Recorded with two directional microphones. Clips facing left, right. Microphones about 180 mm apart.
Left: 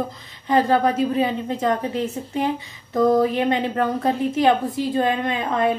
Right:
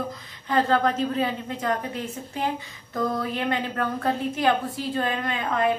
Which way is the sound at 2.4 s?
20° left (ahead or behind).